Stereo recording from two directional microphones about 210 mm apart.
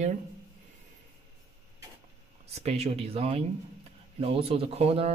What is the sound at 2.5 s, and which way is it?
Speech, 30° right (ahead or behind).